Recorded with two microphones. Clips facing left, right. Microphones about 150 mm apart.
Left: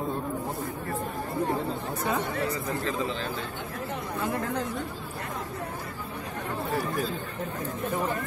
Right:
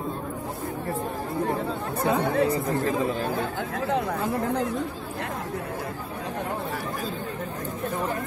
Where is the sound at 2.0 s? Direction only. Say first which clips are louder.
Right 8 dB; 60° right (ahead or behind).